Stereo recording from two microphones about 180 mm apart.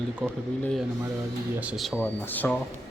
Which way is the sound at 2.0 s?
10° left (ahead or behind).